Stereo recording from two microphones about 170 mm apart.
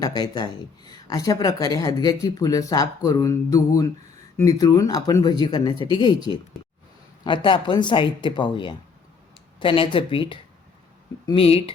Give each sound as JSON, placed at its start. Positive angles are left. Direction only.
{"t": 0.2, "sound": "a woman's voice", "side_deg": 25}
{"t": 7.3, "sound": "a woman's voice", "side_deg": 30}